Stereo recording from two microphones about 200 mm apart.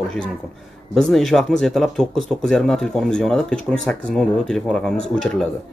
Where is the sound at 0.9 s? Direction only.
Centre (ahead or behind).